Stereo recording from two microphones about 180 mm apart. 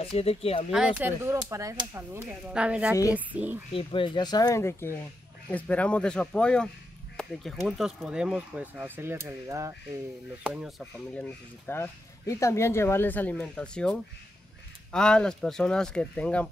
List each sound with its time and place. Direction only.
0.0 s speech: 35° left (ahead or behind)
0.7 s speech: 5° right (ahead or behind)
3.7 s speech: 25° left (ahead or behind); by 9.8 s 15° right (ahead or behind)
10.4 s speech: 5° right (ahead or behind)
10.8 s speech: 10° left (ahead or behind)